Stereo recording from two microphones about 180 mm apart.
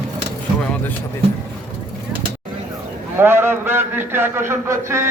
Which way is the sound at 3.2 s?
10° right (ahead or behind).